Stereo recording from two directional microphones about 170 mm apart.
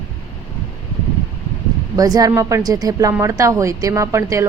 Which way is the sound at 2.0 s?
20° right (ahead or behind).